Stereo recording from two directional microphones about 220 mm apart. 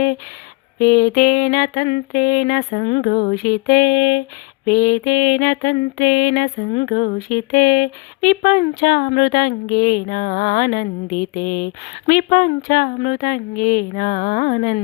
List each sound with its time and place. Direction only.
0.8 s speech: 40° left (ahead or behind)